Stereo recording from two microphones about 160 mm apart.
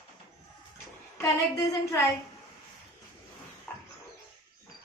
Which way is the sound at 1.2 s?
20° left (ahead or behind).